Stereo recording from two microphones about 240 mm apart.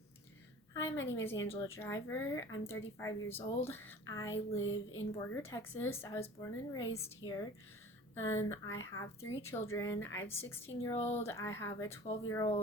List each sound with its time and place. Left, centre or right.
0.7 s a sound: centre
1.5 s speech: centre
4.7 s speech: left
5.1 s speech: centre